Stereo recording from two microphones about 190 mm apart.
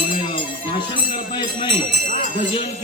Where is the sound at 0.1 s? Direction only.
25° left (ahead or behind).